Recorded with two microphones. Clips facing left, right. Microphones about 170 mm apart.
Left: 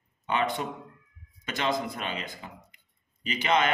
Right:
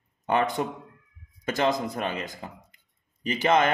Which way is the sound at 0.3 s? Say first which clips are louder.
Right 4 dB; 45° right (ahead or behind).